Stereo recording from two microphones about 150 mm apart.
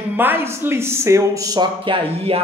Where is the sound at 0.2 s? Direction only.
15° right (ahead or behind).